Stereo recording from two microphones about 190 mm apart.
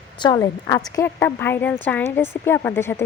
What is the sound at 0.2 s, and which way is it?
A woman's voice, 20° left (ahead or behind).